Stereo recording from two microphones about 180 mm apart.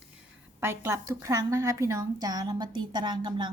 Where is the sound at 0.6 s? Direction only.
15° right (ahead or behind).